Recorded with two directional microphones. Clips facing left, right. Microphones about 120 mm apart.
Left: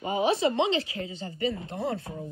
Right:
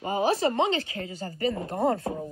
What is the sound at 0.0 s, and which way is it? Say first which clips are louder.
Speech: even; 35° right (ahead or behind).